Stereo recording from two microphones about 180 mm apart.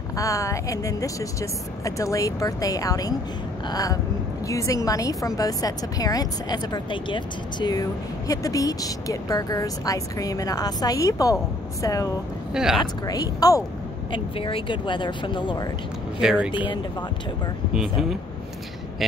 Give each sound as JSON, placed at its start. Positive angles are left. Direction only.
{"t": 0.2, "sound": "a woman's voice", "side_deg": 20}
{"t": 12.5, "sound": "speech", "side_deg": -5}
{"t": 13.0, "sound": "a woman's voice", "side_deg": 20}
{"t": 16.2, "sound": "speech", "side_deg": -5}
{"t": 16.5, "sound": "a woman's voice", "side_deg": 25}